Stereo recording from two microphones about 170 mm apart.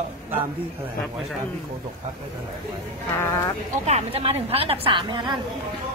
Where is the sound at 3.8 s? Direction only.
35° right (ahead or behind).